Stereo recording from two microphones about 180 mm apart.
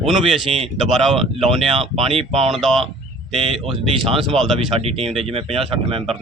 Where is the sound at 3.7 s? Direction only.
30° right (ahead or behind).